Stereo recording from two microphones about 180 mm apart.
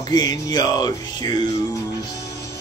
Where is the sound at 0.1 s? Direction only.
25° left (ahead or behind).